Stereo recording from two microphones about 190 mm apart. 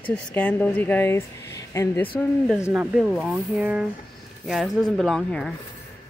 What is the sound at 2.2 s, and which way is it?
Speech, centre (ahead or behind).